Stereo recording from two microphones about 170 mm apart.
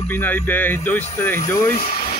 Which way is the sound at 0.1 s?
10° left (ahead or behind).